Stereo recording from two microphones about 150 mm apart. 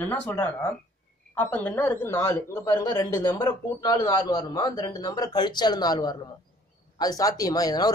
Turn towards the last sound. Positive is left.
turn(degrees=25)  # may be behind; listen again after turning